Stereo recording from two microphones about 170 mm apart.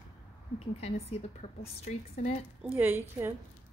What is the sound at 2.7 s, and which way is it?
Speech, 15° right (ahead or behind).